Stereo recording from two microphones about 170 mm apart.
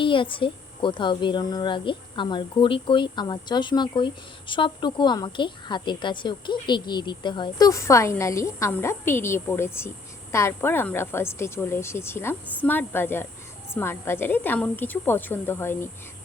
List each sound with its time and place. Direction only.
0.0 s a woman's voice: 30° left (ahead or behind); by 15.9 s 15° left (ahead or behind)